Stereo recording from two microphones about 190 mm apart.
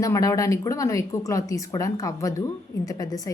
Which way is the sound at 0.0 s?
20° left (ahead or behind).